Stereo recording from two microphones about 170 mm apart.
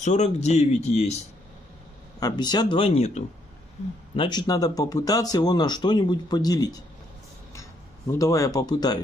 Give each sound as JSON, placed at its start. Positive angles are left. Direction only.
{"t": 0.0, "sound": "speech", "side_deg": 45}
{"t": 2.1, "sound": "speech", "side_deg": 25}
{"t": 8.1, "sound": "speech", "side_deg": 20}